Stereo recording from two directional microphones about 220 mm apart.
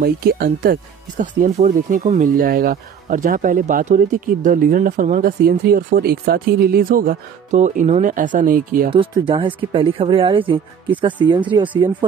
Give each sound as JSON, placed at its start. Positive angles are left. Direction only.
{"t": 0.0, "sound": "speech", "side_deg": -45}
{"t": 8.9, "sound": "speech", "side_deg": -25}